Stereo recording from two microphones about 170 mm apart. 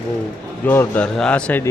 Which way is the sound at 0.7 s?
10° left (ahead or behind).